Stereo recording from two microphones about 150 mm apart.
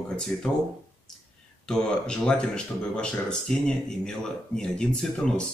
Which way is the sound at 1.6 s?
5° left (ahead or behind).